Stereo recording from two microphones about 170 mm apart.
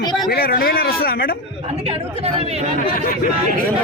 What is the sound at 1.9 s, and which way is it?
Speech, 40° right (ahead or behind).